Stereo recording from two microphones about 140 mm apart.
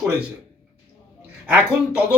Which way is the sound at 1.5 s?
10° right (ahead or behind).